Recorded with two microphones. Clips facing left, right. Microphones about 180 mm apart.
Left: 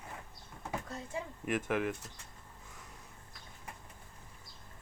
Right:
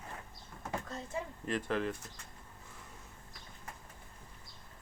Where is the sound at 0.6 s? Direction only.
10° left (ahead or behind).